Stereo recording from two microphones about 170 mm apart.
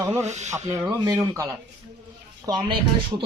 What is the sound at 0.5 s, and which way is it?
Speech, 20° right (ahead or behind).